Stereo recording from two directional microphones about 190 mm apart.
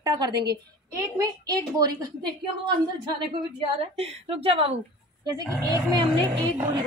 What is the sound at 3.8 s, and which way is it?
Speech, 30° right (ahead or behind).